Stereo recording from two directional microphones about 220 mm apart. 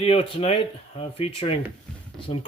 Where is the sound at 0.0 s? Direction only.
25° left (ahead or behind).